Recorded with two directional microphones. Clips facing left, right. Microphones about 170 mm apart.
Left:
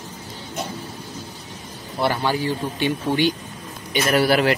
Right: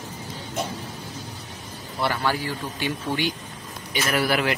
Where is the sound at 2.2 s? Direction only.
25° left (ahead or behind).